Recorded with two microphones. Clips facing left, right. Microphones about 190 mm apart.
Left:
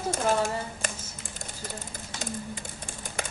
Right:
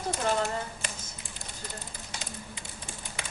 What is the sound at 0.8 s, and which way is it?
Typing, 45° left (ahead or behind).